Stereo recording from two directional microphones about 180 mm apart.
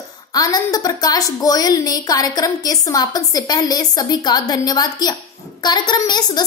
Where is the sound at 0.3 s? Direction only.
20° left (ahead or behind).